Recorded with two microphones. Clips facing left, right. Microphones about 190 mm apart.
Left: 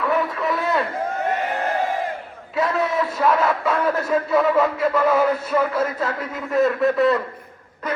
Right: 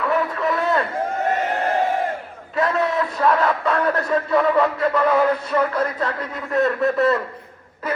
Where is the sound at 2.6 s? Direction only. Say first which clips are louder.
Right 1 dB; centre (ahead or behind).